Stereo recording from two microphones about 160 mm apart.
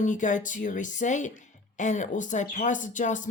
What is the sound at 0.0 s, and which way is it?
Speech, 50° left (ahead or behind).